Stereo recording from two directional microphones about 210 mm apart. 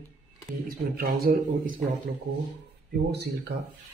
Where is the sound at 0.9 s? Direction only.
45° right (ahead or behind).